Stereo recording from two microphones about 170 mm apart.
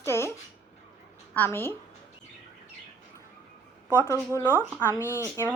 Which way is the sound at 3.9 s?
15° left (ahead or behind).